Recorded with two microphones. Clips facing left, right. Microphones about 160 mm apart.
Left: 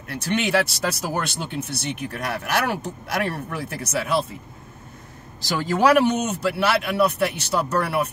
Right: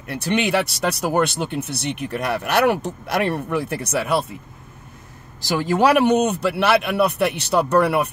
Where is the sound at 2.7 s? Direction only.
65° right (ahead or behind).